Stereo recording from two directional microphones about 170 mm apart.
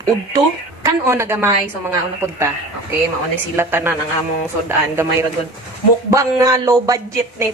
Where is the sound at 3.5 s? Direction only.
15° right (ahead or behind).